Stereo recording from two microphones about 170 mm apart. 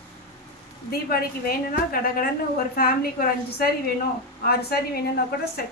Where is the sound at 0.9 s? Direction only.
65° left (ahead or behind).